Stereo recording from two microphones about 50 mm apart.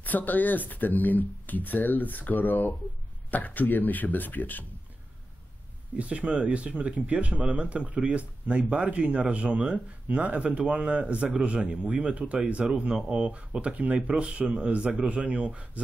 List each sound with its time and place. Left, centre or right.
0.0 s speech: left
5.9 s speech: right